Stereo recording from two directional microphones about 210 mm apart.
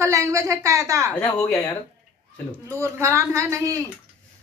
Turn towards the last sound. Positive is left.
turn(degrees=-15)  # may be behind; listen again after turning